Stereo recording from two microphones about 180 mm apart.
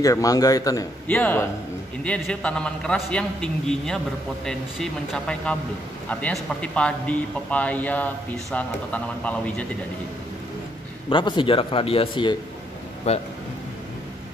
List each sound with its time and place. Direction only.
0.0 s a man's voice: 20° left (ahead or behind)
1.0 s a man's voice: 10° left (ahead or behind)
11.1 s a man's voice: 25° left (ahead or behind)